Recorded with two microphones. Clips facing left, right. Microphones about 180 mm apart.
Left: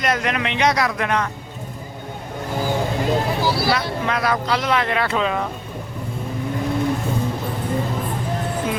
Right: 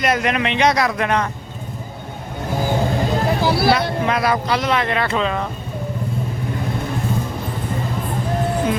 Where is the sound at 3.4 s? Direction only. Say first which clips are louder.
Right 2 dB; 60° right (ahead or behind).